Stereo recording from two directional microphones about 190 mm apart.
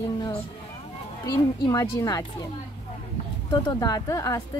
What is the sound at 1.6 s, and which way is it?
Speech, 20° left (ahead or behind).